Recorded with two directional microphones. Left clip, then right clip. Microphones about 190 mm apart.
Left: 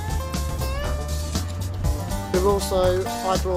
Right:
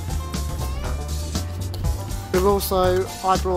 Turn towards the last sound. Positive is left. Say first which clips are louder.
# right 2 dB
turn(degrees=0)  # may be behind; listen again after turning